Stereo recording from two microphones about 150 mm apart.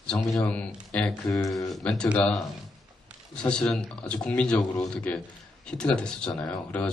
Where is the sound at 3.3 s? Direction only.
5° left (ahead or behind).